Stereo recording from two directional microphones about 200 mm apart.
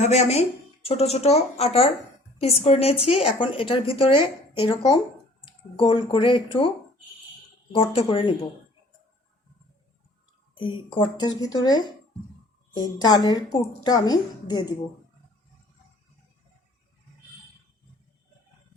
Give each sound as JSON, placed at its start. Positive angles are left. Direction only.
{"t": 0.0, "sound": "a woman's voice", "side_deg": 35}
{"t": 7.8, "sound": "a woman's voice", "side_deg": 25}
{"t": 10.5, "sound": "a woman's voice", "side_deg": 25}